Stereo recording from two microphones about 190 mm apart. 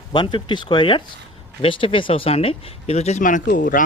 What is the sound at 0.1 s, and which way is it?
Speech, 25° left (ahead or behind).